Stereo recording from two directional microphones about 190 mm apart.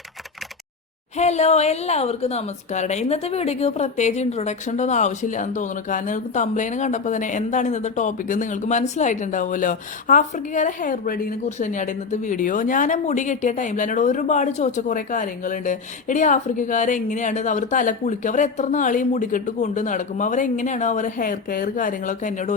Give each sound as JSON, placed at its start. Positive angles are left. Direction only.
{"t": 1.1, "sound": "speech", "side_deg": 35}